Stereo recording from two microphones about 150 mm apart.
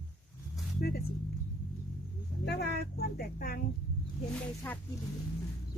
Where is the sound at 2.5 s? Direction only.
90° left.